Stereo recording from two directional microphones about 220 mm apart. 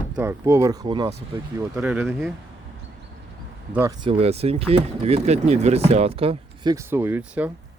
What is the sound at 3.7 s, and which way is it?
Speech, 15° right (ahead or behind).